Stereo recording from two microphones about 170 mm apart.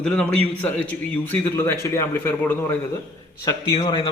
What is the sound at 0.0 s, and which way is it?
A man's voice, 5° left (ahead or behind).